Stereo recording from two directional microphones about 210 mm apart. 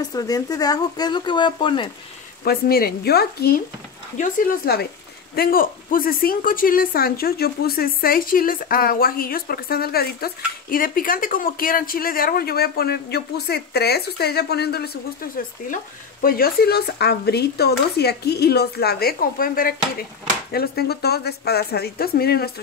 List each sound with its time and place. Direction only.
0.0 s speech: 20° left (ahead or behind)
2.4 s a woman's voice: 45° left (ahead or behind)